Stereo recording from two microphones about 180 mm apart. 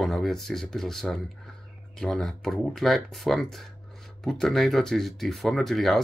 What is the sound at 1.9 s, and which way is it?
Speech, centre (ahead or behind).